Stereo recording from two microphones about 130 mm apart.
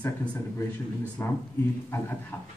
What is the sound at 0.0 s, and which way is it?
Speech, 10° left (ahead or behind).